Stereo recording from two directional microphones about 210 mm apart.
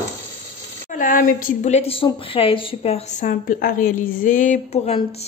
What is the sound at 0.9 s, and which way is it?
A woman's voice, 40° left (ahead or behind).